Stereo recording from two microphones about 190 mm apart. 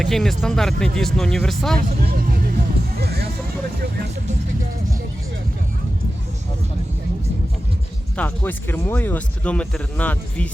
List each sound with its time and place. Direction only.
0.0 s speech: centre (ahead or behind)
1.9 s music: 50° right (ahead or behind)
8.1 s speech: 10° left (ahead or behind)